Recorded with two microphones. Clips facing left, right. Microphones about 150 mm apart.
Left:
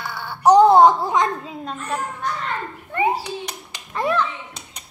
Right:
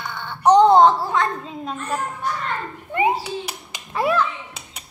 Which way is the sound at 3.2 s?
5° right (ahead or behind).